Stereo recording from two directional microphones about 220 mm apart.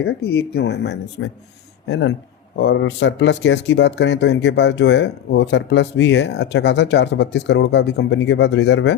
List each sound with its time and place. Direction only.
0.5 s speech: 50° left (ahead or behind)